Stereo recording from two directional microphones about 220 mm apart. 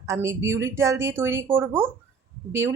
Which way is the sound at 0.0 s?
15° right (ahead or behind).